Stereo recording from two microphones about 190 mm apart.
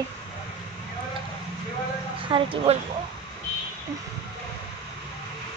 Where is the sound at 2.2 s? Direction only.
25° right (ahead or behind).